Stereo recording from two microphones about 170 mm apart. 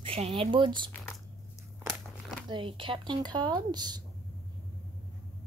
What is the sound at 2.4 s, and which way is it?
Speech, 30° right (ahead or behind).